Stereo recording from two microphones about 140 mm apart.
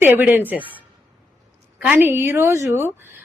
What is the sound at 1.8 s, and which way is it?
Speech, 15° right (ahead or behind).